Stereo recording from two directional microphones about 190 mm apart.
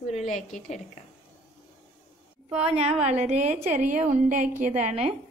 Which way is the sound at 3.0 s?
35° right (ahead or behind).